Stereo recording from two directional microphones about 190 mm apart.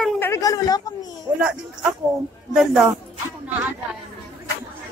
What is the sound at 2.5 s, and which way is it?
Speech, centre (ahead or behind).